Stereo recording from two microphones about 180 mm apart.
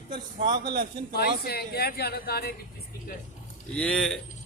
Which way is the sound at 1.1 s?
60° left (ahead or behind).